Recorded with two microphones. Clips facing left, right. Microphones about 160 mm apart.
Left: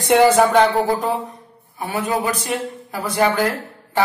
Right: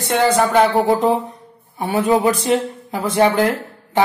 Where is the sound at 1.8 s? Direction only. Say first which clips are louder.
Right 6 dB; 25° right (ahead or behind).